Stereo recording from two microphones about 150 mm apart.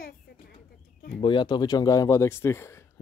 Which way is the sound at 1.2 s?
30° left (ahead or behind).